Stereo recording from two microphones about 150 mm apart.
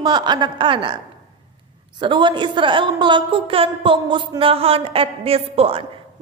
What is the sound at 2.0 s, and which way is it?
A woman's voice, 30° right (ahead or behind).